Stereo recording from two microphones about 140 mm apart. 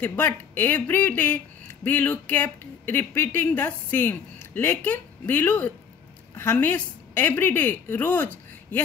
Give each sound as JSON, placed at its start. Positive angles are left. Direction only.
{"t": 0.0, "sound": "a woman's voice", "side_deg": 15}